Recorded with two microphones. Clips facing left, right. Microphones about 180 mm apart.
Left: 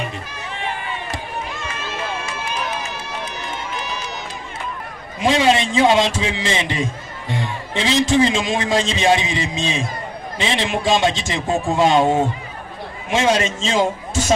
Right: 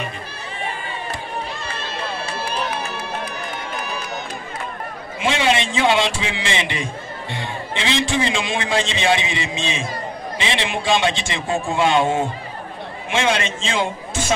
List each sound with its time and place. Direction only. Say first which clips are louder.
1.5 s run: left 1 dB; 35° right (ahead or behind)
2.8 s run: right 2 dB; 55° right (ahead or behind)
5.2 s a man's voice: left 4 dB; 40° left (ahead or behind)